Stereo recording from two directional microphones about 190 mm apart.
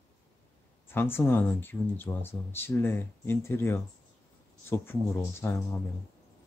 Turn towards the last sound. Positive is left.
turn(degrees=10)  # may be behind; listen again after turning